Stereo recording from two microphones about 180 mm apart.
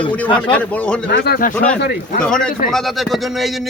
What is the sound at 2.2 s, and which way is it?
Speech, 5° left (ahead or behind).